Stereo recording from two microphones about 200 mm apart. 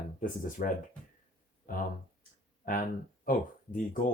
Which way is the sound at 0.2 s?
40° left (ahead or behind).